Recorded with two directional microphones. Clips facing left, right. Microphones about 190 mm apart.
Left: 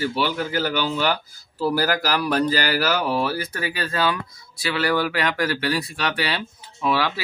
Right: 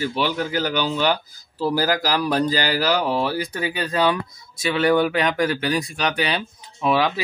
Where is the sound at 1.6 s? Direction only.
15° right (ahead or behind).